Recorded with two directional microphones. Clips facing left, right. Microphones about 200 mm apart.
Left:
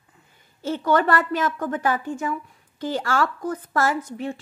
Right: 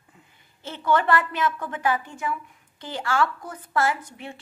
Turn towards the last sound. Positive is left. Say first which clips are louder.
# left 4 dB
turn(degrees=40)  # may be behind; listen again after turning